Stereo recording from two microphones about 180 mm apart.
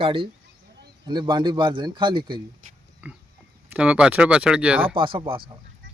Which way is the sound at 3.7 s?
5° right (ahead or behind).